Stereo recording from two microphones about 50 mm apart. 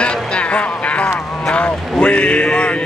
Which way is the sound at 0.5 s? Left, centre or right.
Left.